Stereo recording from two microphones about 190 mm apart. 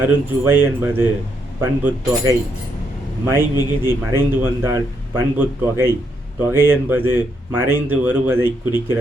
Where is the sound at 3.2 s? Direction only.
10° right (ahead or behind).